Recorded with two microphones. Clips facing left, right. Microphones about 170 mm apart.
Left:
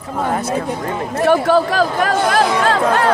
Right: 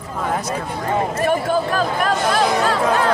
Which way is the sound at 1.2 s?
90° left.